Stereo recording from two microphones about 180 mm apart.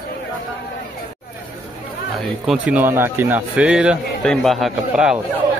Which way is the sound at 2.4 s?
5° right (ahead or behind).